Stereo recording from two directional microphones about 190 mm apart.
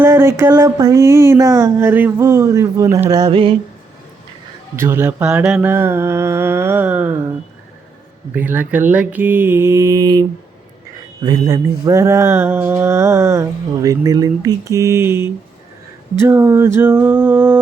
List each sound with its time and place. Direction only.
0.0 s mantra: 15° right (ahead or behind)
3.1 s a sound: 20° right (ahead or behind)
4.8 s mantra: 10° right (ahead or behind)